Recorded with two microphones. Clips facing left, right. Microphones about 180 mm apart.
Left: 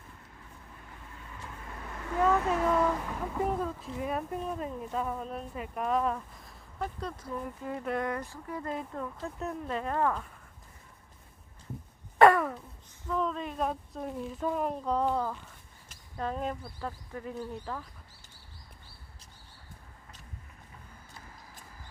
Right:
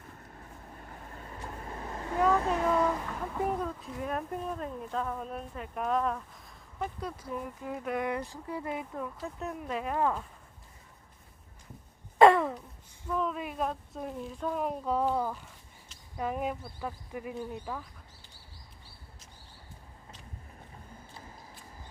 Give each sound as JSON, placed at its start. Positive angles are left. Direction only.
{"t": 0.3, "sound": "vehicle", "side_deg": -45}
{"t": 2.5, "sound": "a sound", "side_deg": 0}
{"t": 5.2, "sound": "speech", "side_deg": 0}
{"t": 8.0, "sound": "speech", "side_deg": -15}
{"t": 12.2, "sound": "a sound", "side_deg": -15}
{"t": 13.7, "sound": "speech", "side_deg": 0}
{"t": 17.5, "sound": "speech", "side_deg": -5}